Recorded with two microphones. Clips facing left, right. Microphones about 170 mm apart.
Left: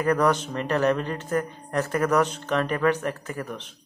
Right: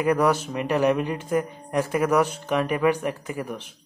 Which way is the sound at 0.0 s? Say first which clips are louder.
Right 1 dB; 10° right (ahead or behind).